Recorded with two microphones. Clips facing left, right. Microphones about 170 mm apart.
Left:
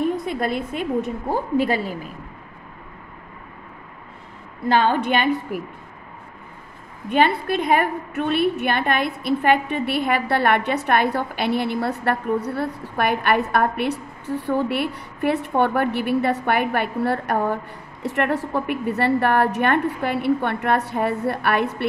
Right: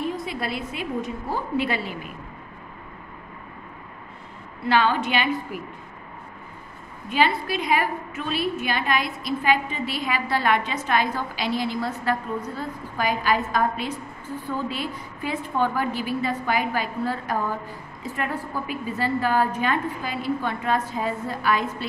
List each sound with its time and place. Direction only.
0.0 s a woman's voice: 50° left (ahead or behind)
4.6 s a woman's voice: 50° left (ahead or behind)
7.1 s a woman's voice: 55° left (ahead or behind)
18.0 s a woman's voice: 75° left (ahead or behind)